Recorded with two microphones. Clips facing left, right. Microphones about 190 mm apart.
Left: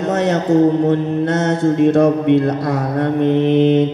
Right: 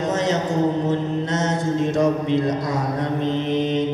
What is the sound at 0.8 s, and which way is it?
Mantra, 60° left (ahead or behind).